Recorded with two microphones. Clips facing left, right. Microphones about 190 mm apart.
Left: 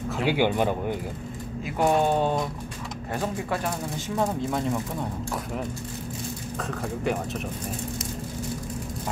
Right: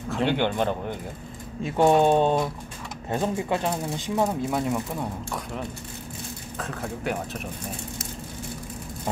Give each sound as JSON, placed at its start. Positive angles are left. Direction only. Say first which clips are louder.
{"t": 0.1, "sound": "speech", "louder": "even", "side_deg": 5}
{"t": 1.6, "sound": "speech", "louder": "right 4 dB", "side_deg": -25}
{"t": 4.1, "sound": "speech", "louder": "right 1 dB", "side_deg": -10}
{"t": 6.6, "sound": "speech", "louder": "left 2 dB", "side_deg": 0}